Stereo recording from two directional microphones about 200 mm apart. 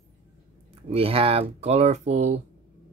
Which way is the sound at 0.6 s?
30° right (ahead or behind).